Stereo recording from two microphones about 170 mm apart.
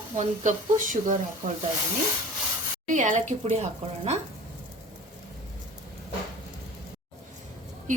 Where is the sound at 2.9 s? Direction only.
50° right (ahead or behind).